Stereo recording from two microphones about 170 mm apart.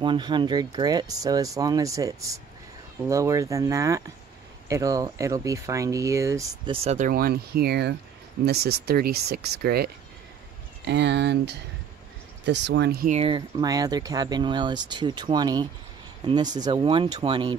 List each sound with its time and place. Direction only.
0.0 s speech: 30° right (ahead or behind)
6.7 s speech: 40° right (ahead or behind)
7.1 s speech: 60° right (ahead or behind)
10.9 s speech: 90° right
13.2 s speech: 25° right (ahead or behind)